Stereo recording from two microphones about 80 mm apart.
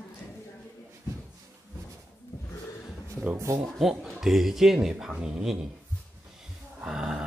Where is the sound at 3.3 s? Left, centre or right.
Right.